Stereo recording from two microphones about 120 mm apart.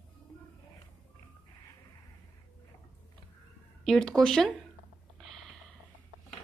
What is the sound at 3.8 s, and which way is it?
Speech, 5° left (ahead or behind).